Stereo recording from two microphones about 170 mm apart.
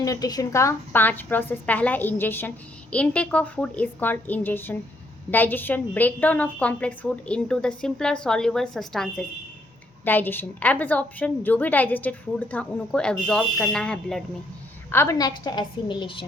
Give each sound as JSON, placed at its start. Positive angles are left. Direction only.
{"t": 0.0, "sound": "a woman's voice", "side_deg": 20}
{"t": 14.8, "sound": "a woman's voice", "side_deg": 15}